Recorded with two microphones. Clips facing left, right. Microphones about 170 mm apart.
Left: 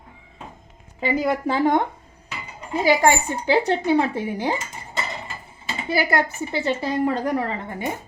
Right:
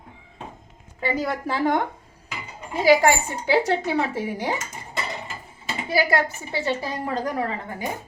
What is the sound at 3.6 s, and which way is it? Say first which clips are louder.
Speech: left 3 dB; 20° left (ahead or behind).